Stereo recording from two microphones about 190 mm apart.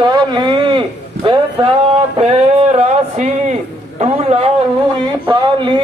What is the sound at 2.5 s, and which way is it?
A man's voice, 35° right (ahead or behind).